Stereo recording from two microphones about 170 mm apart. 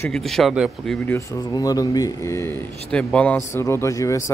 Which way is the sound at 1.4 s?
20° left (ahead or behind).